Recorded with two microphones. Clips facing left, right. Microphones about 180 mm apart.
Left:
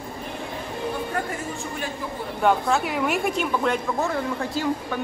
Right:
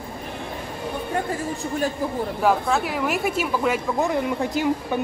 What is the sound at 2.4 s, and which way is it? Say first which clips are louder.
A woman's voice: left 1 dB; centre (ahead or behind).